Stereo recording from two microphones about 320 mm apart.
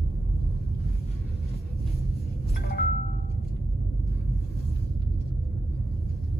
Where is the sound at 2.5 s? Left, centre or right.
Left.